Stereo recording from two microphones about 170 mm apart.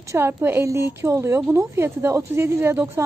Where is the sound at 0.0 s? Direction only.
15° right (ahead or behind).